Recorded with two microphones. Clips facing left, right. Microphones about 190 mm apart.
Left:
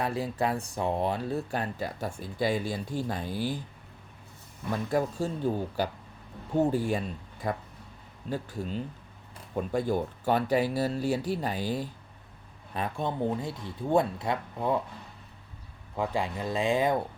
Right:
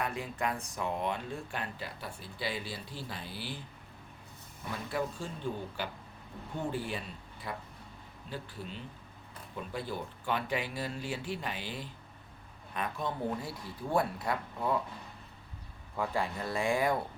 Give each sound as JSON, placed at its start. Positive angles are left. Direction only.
{"t": 0.0, "sound": "speech", "side_deg": 35}
{"t": 4.7, "sound": "speech", "side_deg": 40}
{"t": 12.7, "sound": "speech", "side_deg": 30}
{"t": 16.0, "sound": "speech", "side_deg": 15}